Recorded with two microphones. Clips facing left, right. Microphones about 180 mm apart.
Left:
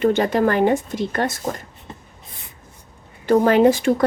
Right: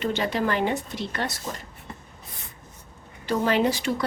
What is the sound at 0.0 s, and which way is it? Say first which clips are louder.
Speech: left 8 dB; 50° left (ahead or behind).